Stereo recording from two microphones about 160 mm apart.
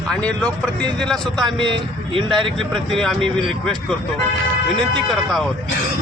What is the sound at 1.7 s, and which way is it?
Speech, 30° right (ahead or behind).